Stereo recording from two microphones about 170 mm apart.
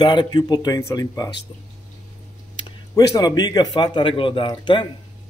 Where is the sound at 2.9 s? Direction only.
20° left (ahead or behind).